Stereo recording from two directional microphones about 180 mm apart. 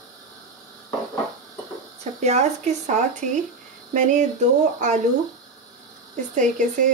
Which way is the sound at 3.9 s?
45° right (ahead or behind).